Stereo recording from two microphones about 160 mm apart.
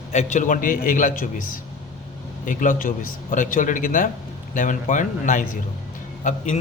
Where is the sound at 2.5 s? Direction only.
55° left (ahead or behind).